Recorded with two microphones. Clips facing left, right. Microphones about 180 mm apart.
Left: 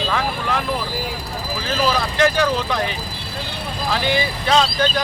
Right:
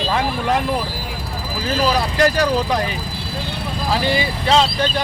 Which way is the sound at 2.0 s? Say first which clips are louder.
Right 1 dB; 35° right (ahead or behind).